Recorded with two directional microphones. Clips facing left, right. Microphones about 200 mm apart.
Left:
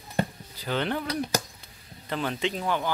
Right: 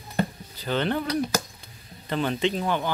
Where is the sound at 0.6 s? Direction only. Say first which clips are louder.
Right 3 dB; 10° left (ahead or behind).